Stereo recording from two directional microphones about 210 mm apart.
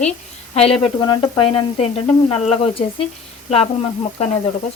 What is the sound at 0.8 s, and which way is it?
Frying, 20° left (ahead or behind).